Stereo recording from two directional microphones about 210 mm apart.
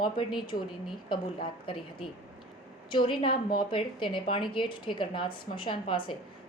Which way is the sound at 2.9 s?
25° left (ahead or behind).